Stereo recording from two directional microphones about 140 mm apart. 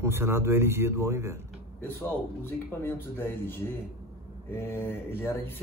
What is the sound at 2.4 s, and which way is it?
Speech, 15° left (ahead or behind).